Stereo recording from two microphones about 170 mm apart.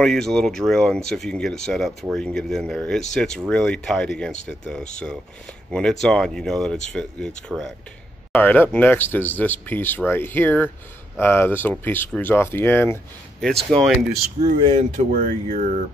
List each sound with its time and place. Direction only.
0.0 s speech: 5° left (ahead or behind)
13.4 s speech: centre (ahead or behind)
14.8 s speech: 45° right (ahead or behind)